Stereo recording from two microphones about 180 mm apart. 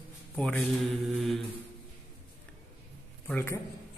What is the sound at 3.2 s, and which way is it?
Speech, 10° left (ahead or behind).